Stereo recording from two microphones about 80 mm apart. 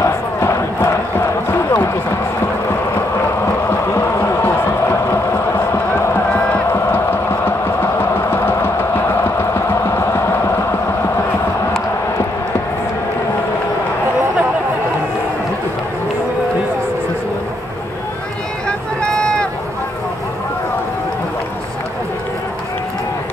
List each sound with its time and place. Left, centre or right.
0.0 s crowd: left
1.5 s run: left
3.9 s music: left
6.3 s music: left
9.2 s a sound: left
18.7 s vehicle: centre